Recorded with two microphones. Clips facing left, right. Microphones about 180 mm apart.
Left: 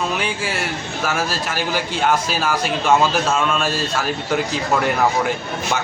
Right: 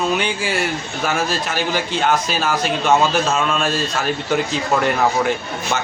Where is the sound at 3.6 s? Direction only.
5° left (ahead or behind).